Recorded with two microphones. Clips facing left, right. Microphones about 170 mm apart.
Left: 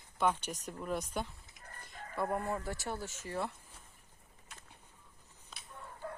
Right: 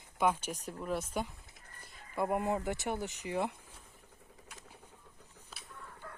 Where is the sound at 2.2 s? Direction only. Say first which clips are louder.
Right 3 dB; 15° right (ahead or behind).